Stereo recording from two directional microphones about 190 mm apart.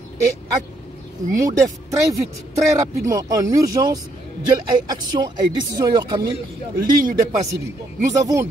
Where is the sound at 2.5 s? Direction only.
15° right (ahead or behind).